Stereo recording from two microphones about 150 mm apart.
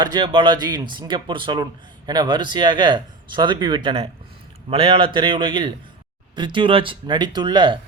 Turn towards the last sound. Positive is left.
turn(degrees=-30)  # may be behind; listen again after turning